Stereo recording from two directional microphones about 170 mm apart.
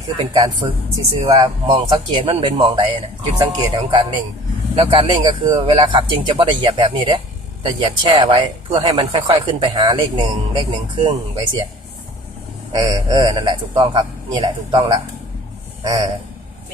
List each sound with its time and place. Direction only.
0.2 s speech: 30° right (ahead or behind)
12.7 s speech: 20° right (ahead or behind)